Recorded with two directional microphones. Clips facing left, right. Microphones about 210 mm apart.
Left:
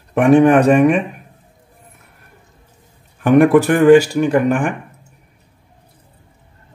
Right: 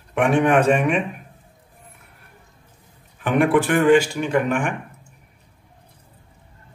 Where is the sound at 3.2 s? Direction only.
40° left (ahead or behind).